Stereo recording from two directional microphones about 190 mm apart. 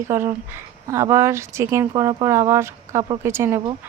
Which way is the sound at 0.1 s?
10° right (ahead or behind).